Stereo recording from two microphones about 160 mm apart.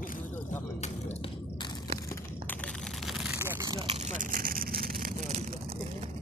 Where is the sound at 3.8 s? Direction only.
40° right (ahead or behind).